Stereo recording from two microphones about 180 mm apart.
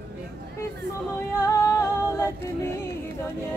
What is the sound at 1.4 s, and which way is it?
A capella, 15° left (ahead or behind).